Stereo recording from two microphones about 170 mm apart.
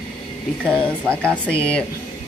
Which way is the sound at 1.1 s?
5° left (ahead or behind).